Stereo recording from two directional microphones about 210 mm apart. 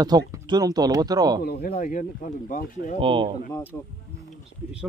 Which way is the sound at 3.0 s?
25° right (ahead or behind).